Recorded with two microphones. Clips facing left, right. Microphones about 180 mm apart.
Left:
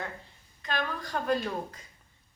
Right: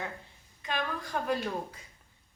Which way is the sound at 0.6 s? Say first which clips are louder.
Left 1 dB; 10° right (ahead or behind).